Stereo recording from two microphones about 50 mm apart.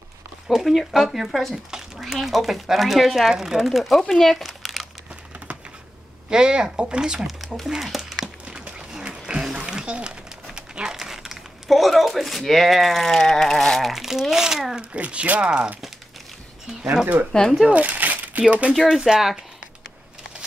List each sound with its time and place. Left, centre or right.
0.5 s speech: centre
1.7 s a sound: centre
2.1 s speech: centre
4.1 s crumpling: centre
6.3 s speech: centre
7.2 s speech: centre
8.5 s a sound: centre
9.2 s a sound: centre
14.3 s speech: centre
14.8 s speech: right
17.3 s speech: centre
17.6 s a sound: right
18.5 s speech: right
18.9 s speech: centre